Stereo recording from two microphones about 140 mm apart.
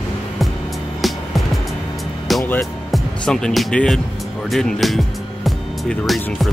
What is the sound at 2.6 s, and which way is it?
Speech, 5° left (ahead or behind).